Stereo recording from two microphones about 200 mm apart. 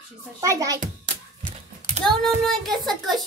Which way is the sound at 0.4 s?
15° right (ahead or behind).